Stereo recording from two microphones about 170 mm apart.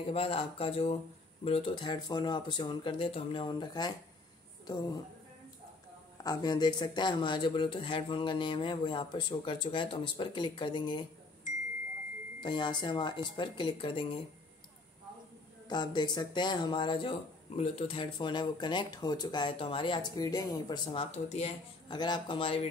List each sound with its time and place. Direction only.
0.0 s speech: 30° left (ahead or behind)
6.2 s speech: 25° left (ahead or behind)
12.4 s speech: 25° left (ahead or behind)
15.7 s speech: 25° left (ahead or behind)
21.8 s speech: 25° left (ahead or behind)